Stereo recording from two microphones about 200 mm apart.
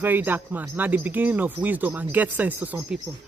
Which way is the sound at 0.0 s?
10° right (ahead or behind).